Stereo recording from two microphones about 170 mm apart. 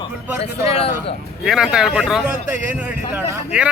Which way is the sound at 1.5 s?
5° right (ahead or behind).